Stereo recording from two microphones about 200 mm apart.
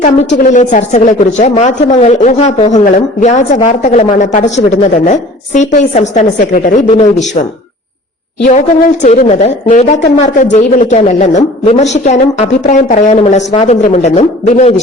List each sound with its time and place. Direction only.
0.3 s a woman's voice: 40° left (ahead or behind)
8.4 s a woman's voice: 35° left (ahead or behind)